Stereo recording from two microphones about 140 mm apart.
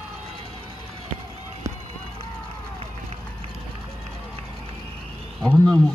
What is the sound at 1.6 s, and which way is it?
Run, 25° right (ahead or behind).